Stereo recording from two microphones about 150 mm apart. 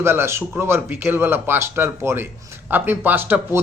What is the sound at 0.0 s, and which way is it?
A man's voice, 15° right (ahead or behind).